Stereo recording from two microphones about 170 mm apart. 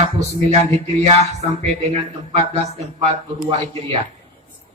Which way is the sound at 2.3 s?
40° right (ahead or behind).